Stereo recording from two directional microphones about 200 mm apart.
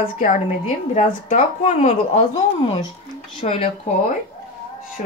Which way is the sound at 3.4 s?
30° left (ahead or behind).